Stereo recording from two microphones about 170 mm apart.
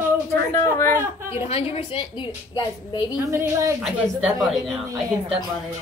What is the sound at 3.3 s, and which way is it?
Speech, 15° right (ahead or behind).